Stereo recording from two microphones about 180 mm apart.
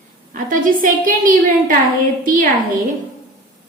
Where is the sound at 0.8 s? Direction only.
50° right (ahead or behind).